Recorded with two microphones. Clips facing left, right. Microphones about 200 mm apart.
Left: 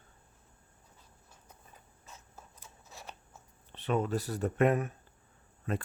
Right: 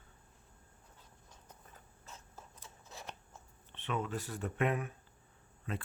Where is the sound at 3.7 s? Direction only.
40° left (ahead or behind).